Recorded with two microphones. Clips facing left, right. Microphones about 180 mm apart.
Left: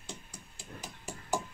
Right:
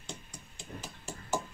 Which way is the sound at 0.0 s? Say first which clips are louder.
Right 1 dB; 5° left (ahead or behind).